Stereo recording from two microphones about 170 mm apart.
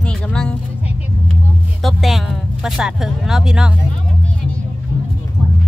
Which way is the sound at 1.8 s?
Centre (ahead or behind).